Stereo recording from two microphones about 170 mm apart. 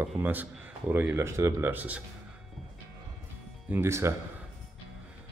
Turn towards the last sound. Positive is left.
turn(degrees=-15)  # may be behind; listen again after turning